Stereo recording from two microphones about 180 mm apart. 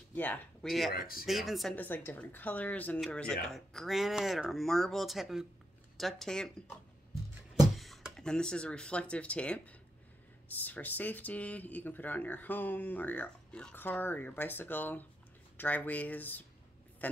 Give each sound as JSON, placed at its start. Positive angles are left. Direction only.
{"t": 0.1, "sound": "speech", "side_deg": 10}
{"t": 0.9, "sound": "speech", "side_deg": 55}
{"t": 1.2, "sound": "speech", "side_deg": 0}